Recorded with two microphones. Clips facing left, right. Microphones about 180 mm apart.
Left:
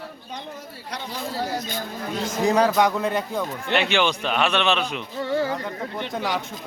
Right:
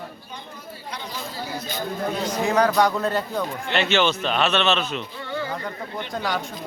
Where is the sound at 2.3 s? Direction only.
35° left (ahead or behind); by 5.0 s 15° left (ahead or behind).